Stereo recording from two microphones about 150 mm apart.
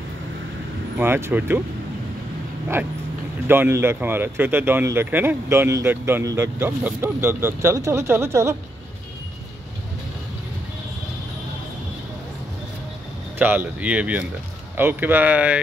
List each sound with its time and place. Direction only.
0.9 s speech: 15° right (ahead or behind)
3.4 s speech: 15° right (ahead or behind)
13.4 s speech: 10° right (ahead or behind)